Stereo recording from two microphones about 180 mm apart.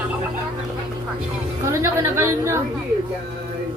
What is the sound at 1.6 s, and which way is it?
A woman's voice, 15° right (ahead or behind).